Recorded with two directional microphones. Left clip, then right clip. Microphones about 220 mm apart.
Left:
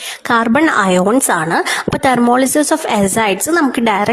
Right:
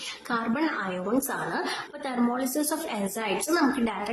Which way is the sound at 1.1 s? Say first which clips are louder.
Left 15 dB; 45° left (ahead or behind).